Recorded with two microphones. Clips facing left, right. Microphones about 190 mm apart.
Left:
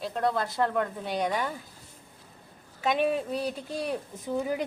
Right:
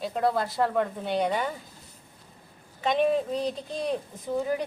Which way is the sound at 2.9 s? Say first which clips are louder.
Right 4 dB; 10° left (ahead or behind).